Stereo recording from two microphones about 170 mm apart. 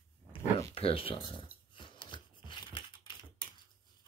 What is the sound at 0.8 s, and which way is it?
Speech, 35° left (ahead or behind).